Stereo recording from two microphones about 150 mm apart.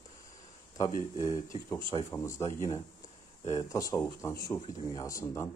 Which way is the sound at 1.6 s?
20° left (ahead or behind).